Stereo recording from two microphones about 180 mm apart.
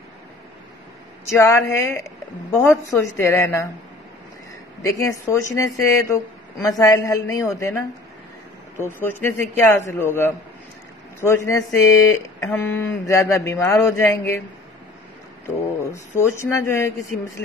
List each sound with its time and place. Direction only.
1.4 s speech: 15° left (ahead or behind)
4.8 s speech: 15° left (ahead or behind)
15.4 s speech: 15° left (ahead or behind)